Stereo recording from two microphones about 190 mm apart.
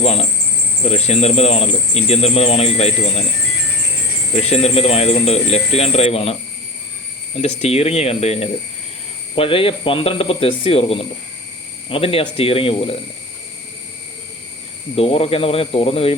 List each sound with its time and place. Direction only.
0.0 s speech: 35° left (ahead or behind)
4.4 s speech: 35° left (ahead or behind)
7.3 s speech: 35° left (ahead or behind)
14.9 s speech: 30° left (ahead or behind)